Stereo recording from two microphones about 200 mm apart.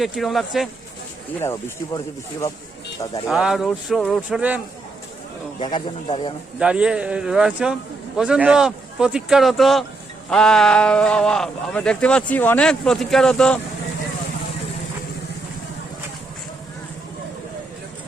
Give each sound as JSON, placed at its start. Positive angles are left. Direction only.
{"t": 0.0, "sound": "speech", "side_deg": 0}
{"t": 1.4, "sound": "speech", "side_deg": 10}
{"t": 3.2, "sound": "speech", "side_deg": 0}
{"t": 5.5, "sound": "speech", "side_deg": 25}
{"t": 6.6, "sound": "speech", "side_deg": -5}